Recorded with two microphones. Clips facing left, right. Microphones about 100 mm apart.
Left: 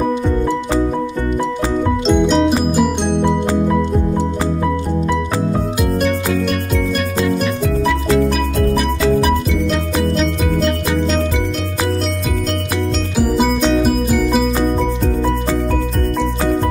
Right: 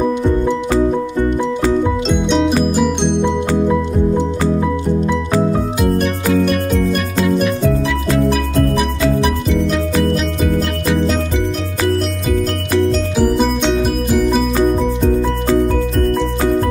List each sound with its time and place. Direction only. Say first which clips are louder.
2.0 s music: left 2 dB; centre (ahead or behind)
7.2 s music: right 5 dB; 5° right (ahead or behind)
13.1 s music: right 1 dB; 5° left (ahead or behind)